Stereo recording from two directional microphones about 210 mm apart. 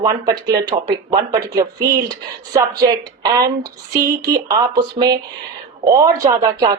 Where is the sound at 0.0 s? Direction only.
20° right (ahead or behind).